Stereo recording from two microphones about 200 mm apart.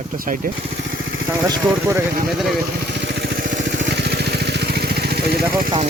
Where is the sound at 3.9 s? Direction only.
55° right (ahead or behind).